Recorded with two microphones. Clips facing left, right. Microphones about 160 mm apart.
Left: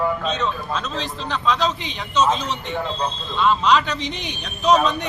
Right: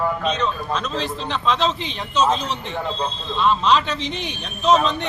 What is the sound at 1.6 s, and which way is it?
Speech, 30° right (ahead or behind).